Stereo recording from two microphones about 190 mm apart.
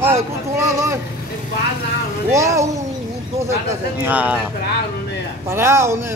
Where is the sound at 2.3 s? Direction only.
15° right (ahead or behind).